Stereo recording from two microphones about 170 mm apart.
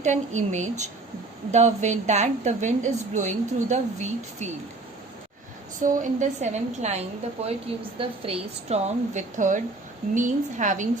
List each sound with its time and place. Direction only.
0.0 s a woman's voice: 45° right (ahead or behind)
5.8 s a woman's voice: 45° right (ahead or behind)